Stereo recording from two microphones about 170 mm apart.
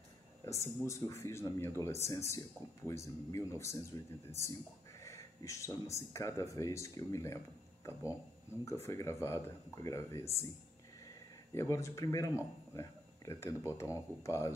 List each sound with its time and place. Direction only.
0.5 s speech: 15° left (ahead or behind)
8.6 s speech: 15° left (ahead or behind)
11.5 s speech: 15° left (ahead or behind)